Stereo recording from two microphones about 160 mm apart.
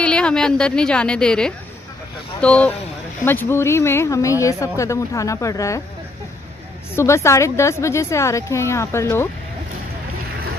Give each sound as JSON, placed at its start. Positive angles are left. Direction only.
{"t": 0.0, "sound": "a woman's voice", "side_deg": 5}
{"t": 7.0, "sound": "a woman's voice", "side_deg": 15}